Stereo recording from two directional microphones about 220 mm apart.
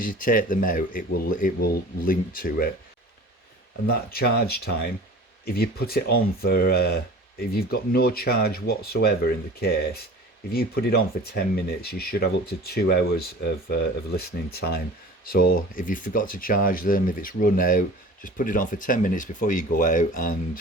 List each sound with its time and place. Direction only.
0.0 s speech: 40° left (ahead or behind)
3.8 s speech: 45° left (ahead or behind)